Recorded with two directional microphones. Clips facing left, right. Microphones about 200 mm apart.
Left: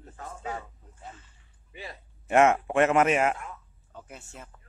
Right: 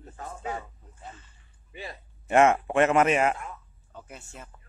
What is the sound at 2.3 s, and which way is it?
A man's voice, 5° left (ahead or behind).